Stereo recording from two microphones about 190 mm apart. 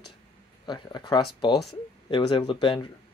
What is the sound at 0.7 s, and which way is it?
Speech, 25° left (ahead or behind).